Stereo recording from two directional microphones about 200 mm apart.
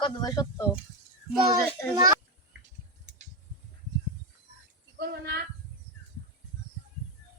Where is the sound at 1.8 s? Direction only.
15° left (ahead or behind).